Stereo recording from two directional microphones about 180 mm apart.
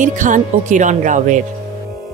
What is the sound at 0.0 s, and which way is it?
Speech, 45° right (ahead or behind).